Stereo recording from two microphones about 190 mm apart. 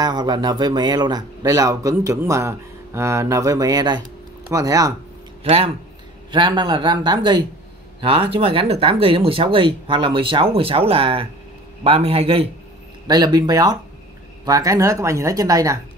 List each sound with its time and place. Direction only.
0.0 s speech: 20° right (ahead or behind)
5.4 s a man's voice: 30° right (ahead or behind)